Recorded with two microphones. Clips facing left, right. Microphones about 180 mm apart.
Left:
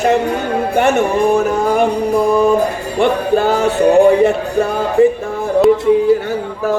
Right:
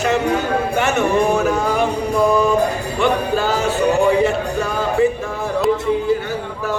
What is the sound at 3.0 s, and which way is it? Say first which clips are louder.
Jingle bell: left 5 dB; 55° left (ahead or behind).